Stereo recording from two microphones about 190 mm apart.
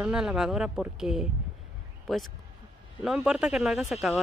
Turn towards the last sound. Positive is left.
turn(degrees=0)  # may be behind; listen again after turning